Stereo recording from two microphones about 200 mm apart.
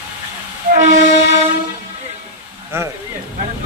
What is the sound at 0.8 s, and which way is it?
Train, 40° right (ahead or behind).